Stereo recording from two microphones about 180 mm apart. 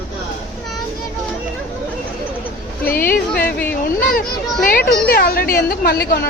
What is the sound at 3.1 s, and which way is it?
Speech, 55° left (ahead or behind).